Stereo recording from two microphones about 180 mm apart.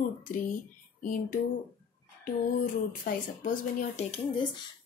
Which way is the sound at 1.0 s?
50° left (ahead or behind).